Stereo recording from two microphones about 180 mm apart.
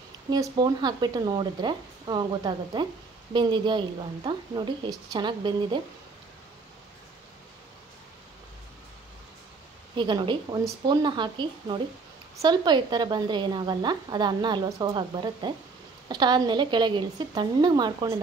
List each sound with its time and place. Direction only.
0.3 s a woman's voice: 20° right (ahead or behind)
9.9 s a woman's voice: 25° right (ahead or behind)